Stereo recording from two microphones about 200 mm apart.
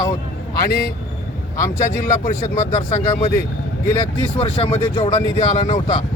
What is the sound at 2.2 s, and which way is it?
Speech, 35° left (ahead or behind).